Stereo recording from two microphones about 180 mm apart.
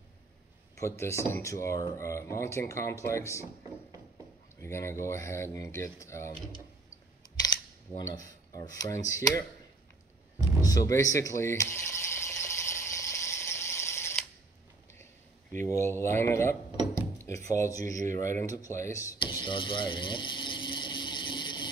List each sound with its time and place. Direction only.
0.7 s speech: 15° left (ahead or behind)
4.6 s speech: 15° left (ahead or behind)
8.0 s speech: 20° left (ahead or behind)
10.6 s mechanisms: 20° left (ahead or behind)
15.5 s speech: 15° left (ahead or behind)
18.4 s a sound: 20° left (ahead or behind)